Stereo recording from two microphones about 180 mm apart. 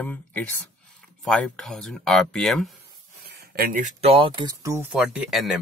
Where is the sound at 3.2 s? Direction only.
60° right (ahead or behind).